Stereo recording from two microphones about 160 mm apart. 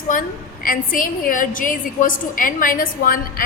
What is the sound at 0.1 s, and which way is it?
A woman's voice, 60° left (ahead or behind).